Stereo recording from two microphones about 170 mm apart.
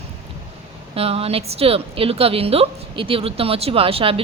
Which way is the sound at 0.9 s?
35° right (ahead or behind).